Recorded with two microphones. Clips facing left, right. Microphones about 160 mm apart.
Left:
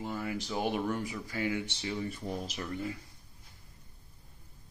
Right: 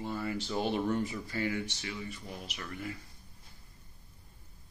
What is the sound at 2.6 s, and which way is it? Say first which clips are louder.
Speech: left 4 dB; 25° left (ahead or behind).